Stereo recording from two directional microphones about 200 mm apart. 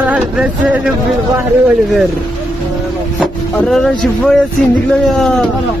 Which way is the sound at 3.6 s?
Centre (ahead or behind).